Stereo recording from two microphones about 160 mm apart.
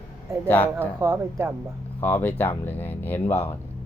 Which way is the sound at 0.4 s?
10° left (ahead or behind).